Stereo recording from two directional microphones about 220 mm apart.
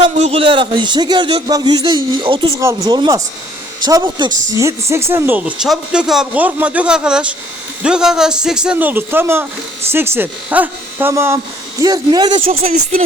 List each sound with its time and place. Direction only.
0.0 s a man's voice: 25° right (ahead or behind)